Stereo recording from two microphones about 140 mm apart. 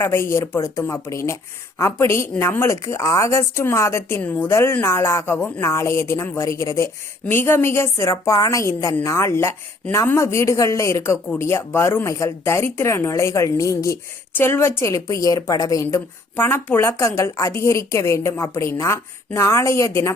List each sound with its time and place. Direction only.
0.0 s a woman's voice: 15° left (ahead or behind)